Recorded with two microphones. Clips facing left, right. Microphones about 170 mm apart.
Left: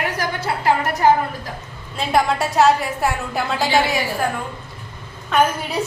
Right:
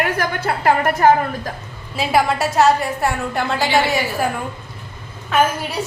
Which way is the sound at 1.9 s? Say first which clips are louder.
Right 1 dB; 5° right (ahead or behind).